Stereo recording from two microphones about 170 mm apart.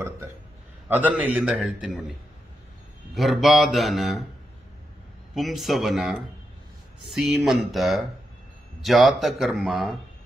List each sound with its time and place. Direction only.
0.8 s a man's voice: 10° right (ahead or behind)
3.2 s a man's voice: centre (ahead or behind)
5.3 s a man's voice: centre (ahead or behind)